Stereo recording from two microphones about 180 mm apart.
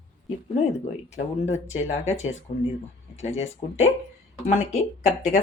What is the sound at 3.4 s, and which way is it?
Speech, 90° left.